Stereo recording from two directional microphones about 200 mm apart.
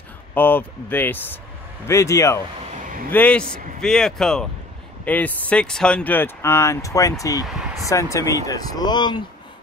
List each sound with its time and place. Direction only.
0.3 s speech: 10° left (ahead or behind)